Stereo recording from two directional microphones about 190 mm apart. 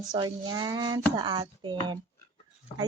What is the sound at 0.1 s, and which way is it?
A woman's voice, 20° right (ahead or behind).